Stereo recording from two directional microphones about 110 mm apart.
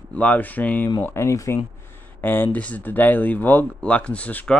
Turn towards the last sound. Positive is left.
turn(degrees=10)  # may be behind; listen again after turning